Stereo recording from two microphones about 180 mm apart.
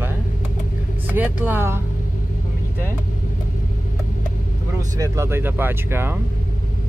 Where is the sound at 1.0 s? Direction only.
10° right (ahead or behind).